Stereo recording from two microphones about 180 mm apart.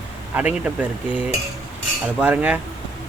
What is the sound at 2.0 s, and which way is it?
Speech, 10° right (ahead or behind).